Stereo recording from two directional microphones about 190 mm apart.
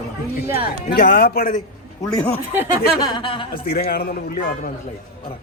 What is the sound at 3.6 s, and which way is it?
Speech, 50° left (ahead or behind).